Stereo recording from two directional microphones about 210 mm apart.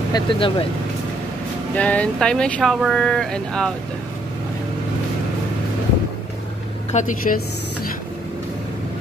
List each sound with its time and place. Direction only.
0.1 s speech: 25° left (ahead or behind)
1.8 s speech: 5° left (ahead or behind)
6.9 s a woman's voice: 35° left (ahead or behind)